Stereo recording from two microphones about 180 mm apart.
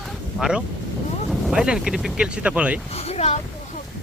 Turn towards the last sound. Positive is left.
turn(degrees=35)  # may be behind; listen again after turning